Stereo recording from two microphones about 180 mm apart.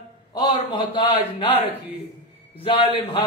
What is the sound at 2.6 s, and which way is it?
Speech, 30° left (ahead or behind).